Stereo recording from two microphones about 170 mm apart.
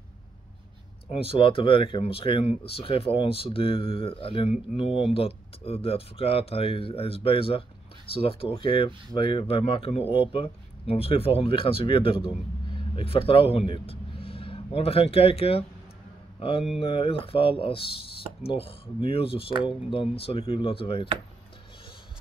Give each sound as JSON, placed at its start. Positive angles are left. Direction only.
{"t": 1.1, "sound": "speech", "side_deg": 30}